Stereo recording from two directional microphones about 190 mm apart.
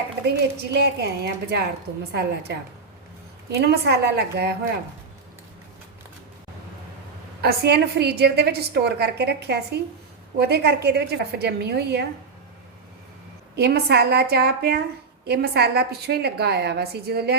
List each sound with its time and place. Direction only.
0.5 s a woman's voice: 60° right (ahead or behind)
7.4 s a woman's voice: 60° right (ahead or behind)
13.6 s a woman's voice: 60° right (ahead or behind)